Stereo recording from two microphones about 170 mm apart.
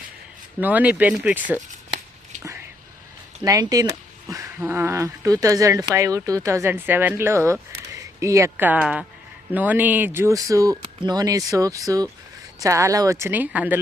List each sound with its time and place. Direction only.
0.6 s speech: 10° right (ahead or behind)
3.4 s speech: 20° right (ahead or behind)